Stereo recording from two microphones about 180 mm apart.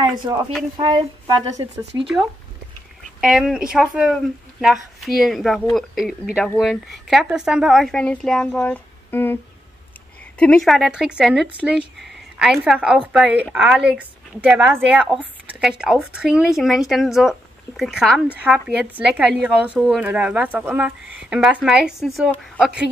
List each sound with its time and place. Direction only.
0.1 s a woman's voice: 20° right (ahead or behind)
3.2 s speech: centre (ahead or behind)
10.4 s a woman's voice: 5° left (ahead or behind)